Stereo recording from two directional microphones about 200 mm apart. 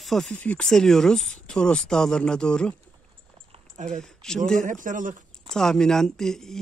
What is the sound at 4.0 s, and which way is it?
Speech, 5° left (ahead or behind).